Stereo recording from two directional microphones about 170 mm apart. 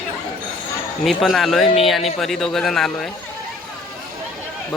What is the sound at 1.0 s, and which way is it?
Speech, centre (ahead or behind).